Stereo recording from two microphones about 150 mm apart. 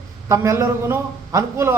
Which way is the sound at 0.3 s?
20° right (ahead or behind).